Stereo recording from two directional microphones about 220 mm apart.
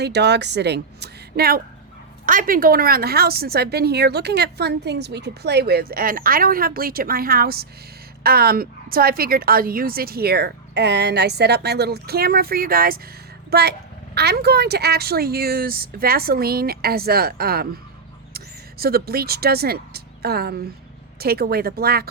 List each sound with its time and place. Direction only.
0.0 s a woman's voice: 50° right (ahead or behind)